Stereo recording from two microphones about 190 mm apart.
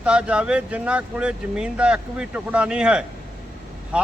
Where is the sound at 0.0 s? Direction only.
5° right (ahead or behind).